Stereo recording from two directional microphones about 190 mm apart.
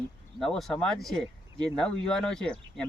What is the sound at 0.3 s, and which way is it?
Speech, centre (ahead or behind).